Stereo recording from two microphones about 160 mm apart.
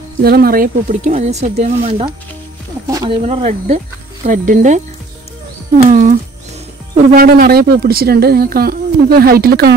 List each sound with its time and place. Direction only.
0.2 s speech: 75° right (ahead or behind)
1.0 s speech: 45° right (ahead or behind)
3.1 s speech: 40° right (ahead or behind)
7.1 s speech: 70° right (ahead or behind)